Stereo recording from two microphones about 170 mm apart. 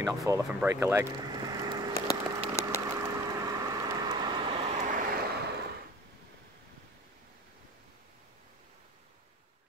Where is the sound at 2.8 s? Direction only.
20° right (ahead or behind).